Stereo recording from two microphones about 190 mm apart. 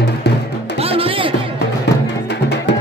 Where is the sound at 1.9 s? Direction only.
65° left (ahead or behind).